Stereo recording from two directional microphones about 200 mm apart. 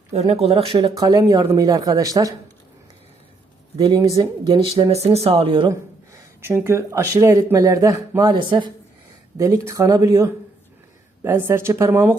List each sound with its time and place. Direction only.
0.1 s speech: 35° right (ahead or behind); by 2.3 s 15° right (ahead or behind)
3.8 s speech: 20° right (ahead or behind)
6.4 s a man's voice: 10° right (ahead or behind)